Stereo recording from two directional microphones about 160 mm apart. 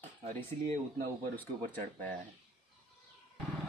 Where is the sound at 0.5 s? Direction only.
45° right (ahead or behind).